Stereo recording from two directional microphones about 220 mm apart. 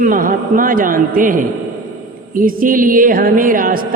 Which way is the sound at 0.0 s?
40° right (ahead or behind).